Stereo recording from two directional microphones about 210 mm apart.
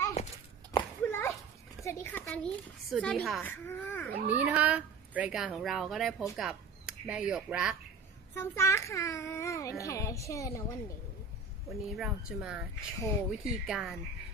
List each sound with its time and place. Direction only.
0.2 s horse: 30° left (ahead or behind)
0.7 s a sound: 15° left (ahead or behind)
1.9 s a woman's voice: 10° left (ahead or behind)
4.3 s a woman's voice: 5° right (ahead or behind)
8.4 s a child's voice: 10° left (ahead or behind)
11.7 s a woman's voice: centre (ahead or behind)